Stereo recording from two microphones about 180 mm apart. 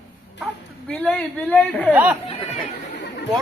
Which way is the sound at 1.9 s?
10° right (ahead or behind).